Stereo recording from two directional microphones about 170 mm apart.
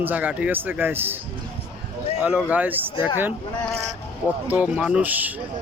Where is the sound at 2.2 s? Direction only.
5° right (ahead or behind).